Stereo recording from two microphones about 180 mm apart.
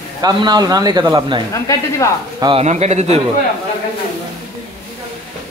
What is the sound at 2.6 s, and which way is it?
Speech, 40° right (ahead or behind).